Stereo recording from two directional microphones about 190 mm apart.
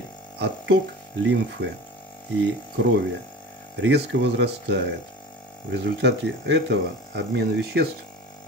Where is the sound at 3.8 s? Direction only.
65° right (ahead or behind).